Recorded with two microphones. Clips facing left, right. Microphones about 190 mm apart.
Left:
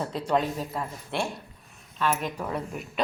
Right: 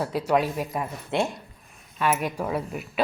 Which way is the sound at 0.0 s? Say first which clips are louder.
Right 3 dB; 10° right (ahead or behind).